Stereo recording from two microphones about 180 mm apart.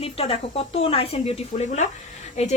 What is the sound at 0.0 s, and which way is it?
Speech, 30° left (ahead or behind).